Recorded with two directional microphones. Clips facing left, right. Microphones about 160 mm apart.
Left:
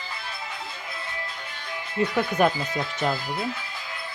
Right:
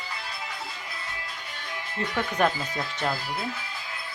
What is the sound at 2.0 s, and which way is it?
Speech, 15° left (ahead or behind).